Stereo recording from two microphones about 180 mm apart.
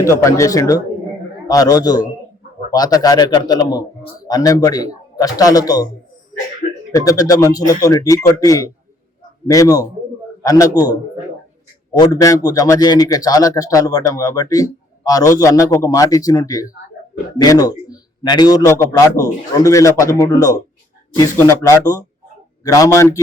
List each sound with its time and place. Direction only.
0.0 s a man's voice: 15° left (ahead or behind)
6.9 s a man's voice: 20° left (ahead or behind)